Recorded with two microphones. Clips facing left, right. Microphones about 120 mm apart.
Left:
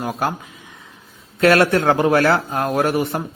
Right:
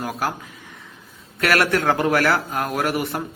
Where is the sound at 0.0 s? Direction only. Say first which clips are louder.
Left 3 dB; 20° left (ahead or behind).